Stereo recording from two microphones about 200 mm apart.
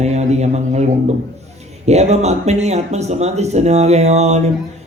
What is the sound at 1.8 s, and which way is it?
Speech, 35° right (ahead or behind).